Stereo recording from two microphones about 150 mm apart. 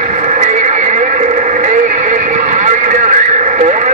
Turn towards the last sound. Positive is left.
turn(degrees=-55)  # may be behind; listen again after turning